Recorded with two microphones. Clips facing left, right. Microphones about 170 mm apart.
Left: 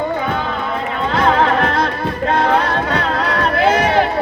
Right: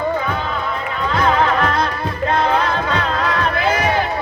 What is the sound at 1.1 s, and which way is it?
Music, 65° left (ahead or behind).